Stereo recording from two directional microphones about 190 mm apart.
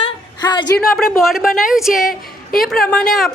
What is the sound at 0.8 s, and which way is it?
A woman's voice, centre (ahead or behind).